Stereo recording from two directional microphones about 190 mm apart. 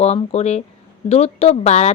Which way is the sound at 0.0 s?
35° left (ahead or behind).